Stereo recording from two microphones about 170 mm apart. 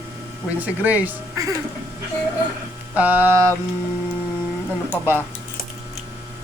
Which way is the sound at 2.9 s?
10° right (ahead or behind).